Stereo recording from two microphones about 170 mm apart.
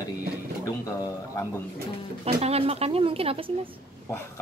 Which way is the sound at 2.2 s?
35° right (ahead or behind).